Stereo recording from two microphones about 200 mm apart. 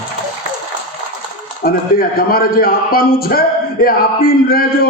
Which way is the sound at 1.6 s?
50° left (ahead or behind).